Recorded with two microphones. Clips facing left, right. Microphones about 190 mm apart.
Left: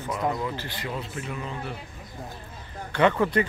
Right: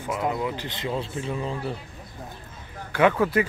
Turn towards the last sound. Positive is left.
turn(degrees=-5)  # may be behind; listen again after turning